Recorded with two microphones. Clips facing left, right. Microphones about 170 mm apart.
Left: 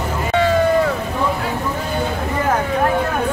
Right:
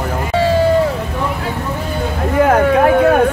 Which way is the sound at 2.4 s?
65° right (ahead or behind).